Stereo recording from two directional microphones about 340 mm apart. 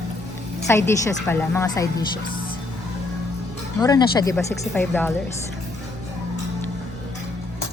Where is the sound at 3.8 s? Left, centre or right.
Centre.